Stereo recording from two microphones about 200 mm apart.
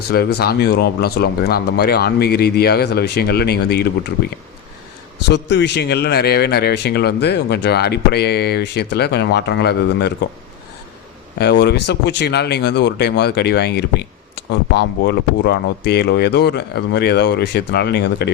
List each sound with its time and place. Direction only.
0.1 s speech: 50° left (ahead or behind)
5.3 s speech: 60° left (ahead or behind)
11.3 s speech: 55° left (ahead or behind)